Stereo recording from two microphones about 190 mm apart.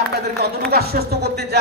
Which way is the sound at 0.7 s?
55° right (ahead or behind).